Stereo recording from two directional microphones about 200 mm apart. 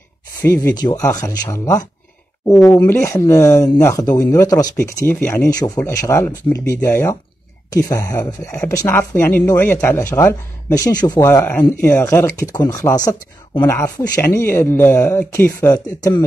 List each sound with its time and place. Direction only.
0.4 s speech: 10° left (ahead or behind)